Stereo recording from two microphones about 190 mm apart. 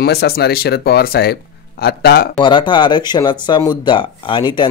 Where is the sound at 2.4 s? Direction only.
25° left (ahead or behind).